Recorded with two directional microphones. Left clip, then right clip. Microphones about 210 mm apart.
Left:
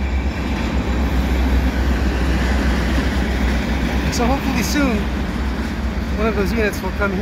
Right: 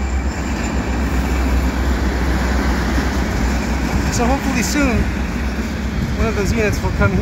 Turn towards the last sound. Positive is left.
turn(degrees=-5)  # may be behind; listen again after turning